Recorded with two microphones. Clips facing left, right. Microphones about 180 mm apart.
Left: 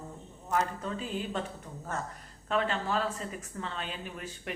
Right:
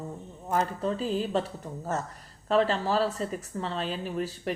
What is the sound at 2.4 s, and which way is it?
Speech, 35° right (ahead or behind).